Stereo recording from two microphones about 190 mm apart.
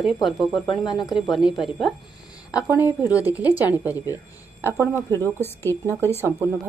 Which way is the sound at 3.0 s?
15° left (ahead or behind).